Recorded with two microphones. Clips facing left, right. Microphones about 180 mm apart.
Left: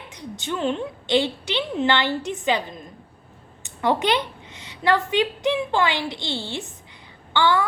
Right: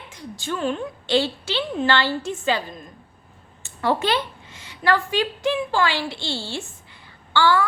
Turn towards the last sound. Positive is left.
turn(degrees=20)  # may be behind; listen again after turning